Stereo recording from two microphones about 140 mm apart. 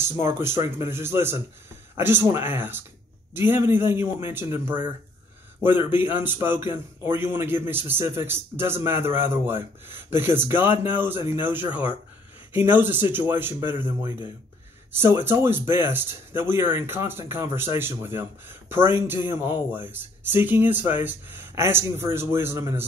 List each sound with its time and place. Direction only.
0.0 s a man's voice: 20° right (ahead or behind)